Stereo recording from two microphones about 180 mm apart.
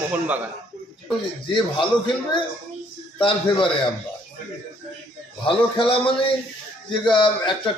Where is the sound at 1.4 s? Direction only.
25° left (ahead or behind).